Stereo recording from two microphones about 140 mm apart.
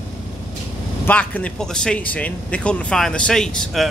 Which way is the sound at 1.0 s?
10° left (ahead or behind).